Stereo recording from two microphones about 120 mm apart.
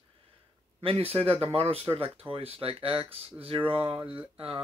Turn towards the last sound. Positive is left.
turn(degrees=-50)  # may be behind; listen again after turning